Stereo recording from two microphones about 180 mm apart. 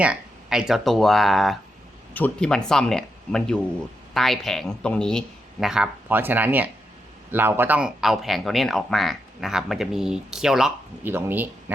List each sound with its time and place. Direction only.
0.0 s speech: 5° right (ahead or behind)